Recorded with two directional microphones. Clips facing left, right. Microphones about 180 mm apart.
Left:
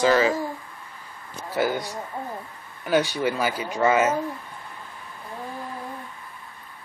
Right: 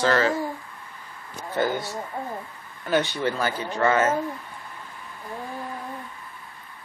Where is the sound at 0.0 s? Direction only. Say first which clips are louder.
Left 2 dB; 10° left (ahead or behind).